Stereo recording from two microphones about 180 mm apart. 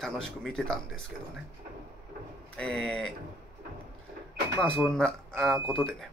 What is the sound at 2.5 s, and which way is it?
Speech, 5° left (ahead or behind).